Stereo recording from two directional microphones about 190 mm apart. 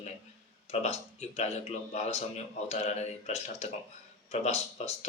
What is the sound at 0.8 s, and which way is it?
Speech, 35° left (ahead or behind).